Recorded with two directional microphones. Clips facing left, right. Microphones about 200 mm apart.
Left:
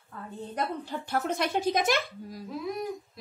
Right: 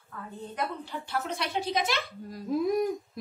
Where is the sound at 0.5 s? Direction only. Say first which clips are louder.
Left 2 dB; 45° left (ahead or behind).